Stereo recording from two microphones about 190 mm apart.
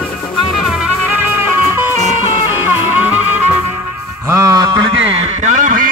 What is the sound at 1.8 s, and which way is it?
Music, 10° right (ahead or behind).